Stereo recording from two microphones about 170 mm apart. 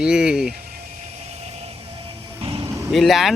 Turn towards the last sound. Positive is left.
turn(degrees=0)  # may be behind; listen again after turning